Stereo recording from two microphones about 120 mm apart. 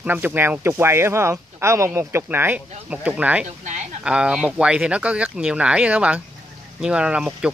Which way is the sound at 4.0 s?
5° right (ahead or behind).